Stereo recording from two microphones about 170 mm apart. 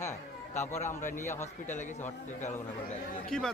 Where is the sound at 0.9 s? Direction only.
45° left (ahead or behind).